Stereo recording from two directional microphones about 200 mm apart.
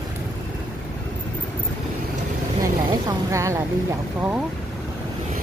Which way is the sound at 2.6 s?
20° right (ahead or behind).